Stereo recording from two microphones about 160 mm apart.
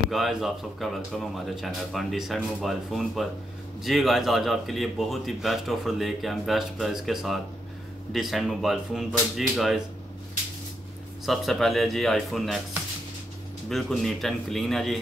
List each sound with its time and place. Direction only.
0.1 s speech: centre (ahead or behind)
11.2 s speech: centre (ahead or behind)
13.7 s speech: centre (ahead or behind)